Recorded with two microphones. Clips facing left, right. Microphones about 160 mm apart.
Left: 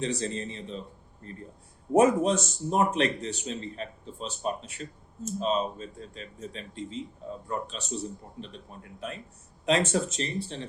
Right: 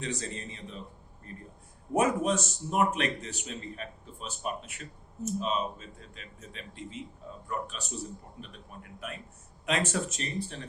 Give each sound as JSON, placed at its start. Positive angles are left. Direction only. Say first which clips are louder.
{"t": 0.0, "sound": "speech", "louder": "left 6 dB", "side_deg": 30}